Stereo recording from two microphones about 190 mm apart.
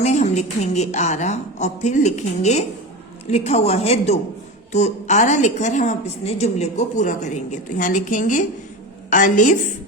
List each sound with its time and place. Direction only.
0.0 s a woman's voice: 35° left (ahead or behind)